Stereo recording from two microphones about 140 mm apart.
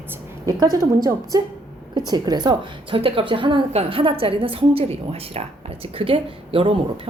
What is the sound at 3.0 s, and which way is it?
A woman's voice, 40° right (ahead or behind).